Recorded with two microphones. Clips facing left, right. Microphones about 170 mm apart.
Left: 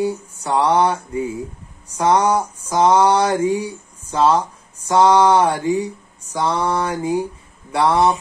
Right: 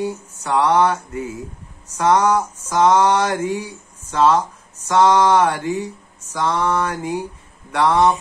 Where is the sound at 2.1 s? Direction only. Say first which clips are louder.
Even; 35° left (ahead or behind).